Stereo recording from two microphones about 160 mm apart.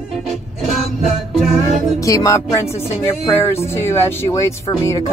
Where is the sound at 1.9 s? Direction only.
20° left (ahead or behind).